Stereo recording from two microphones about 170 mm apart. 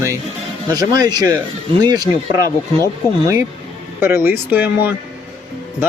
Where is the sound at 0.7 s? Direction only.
20° right (ahead or behind).